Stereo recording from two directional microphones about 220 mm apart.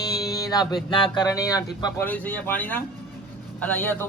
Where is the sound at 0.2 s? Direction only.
15° left (ahead or behind).